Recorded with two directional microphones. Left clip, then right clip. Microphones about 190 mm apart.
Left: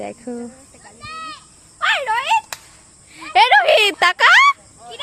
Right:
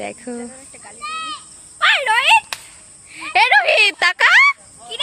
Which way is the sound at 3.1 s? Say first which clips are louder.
Left 1 dB; 10° left (ahead or behind).